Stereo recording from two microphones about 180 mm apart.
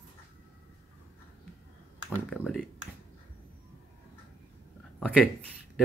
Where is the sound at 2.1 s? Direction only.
5° left (ahead or behind).